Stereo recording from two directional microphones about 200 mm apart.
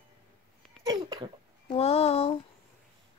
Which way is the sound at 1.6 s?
30° left (ahead or behind).